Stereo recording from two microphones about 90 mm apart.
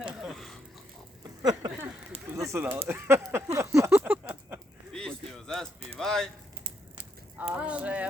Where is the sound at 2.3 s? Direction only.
30° right (ahead or behind).